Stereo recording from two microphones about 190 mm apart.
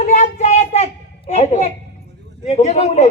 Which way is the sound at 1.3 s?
35° left (ahead or behind).